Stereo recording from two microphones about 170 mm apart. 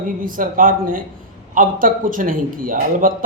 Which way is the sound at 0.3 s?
55° right (ahead or behind).